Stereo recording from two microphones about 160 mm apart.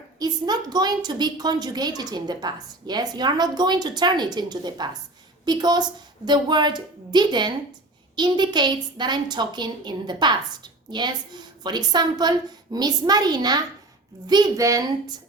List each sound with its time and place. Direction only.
0.2 s a woman's voice: 25° right (ahead or behind)